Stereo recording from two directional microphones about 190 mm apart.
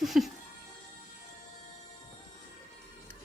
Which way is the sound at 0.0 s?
Centre (ahead or behind).